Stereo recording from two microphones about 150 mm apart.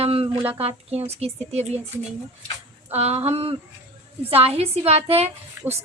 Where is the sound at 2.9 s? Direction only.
45° right (ahead or behind).